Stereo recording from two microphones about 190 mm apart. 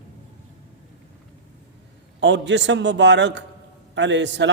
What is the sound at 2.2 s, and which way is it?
A man's voice, 70° right (ahead or behind).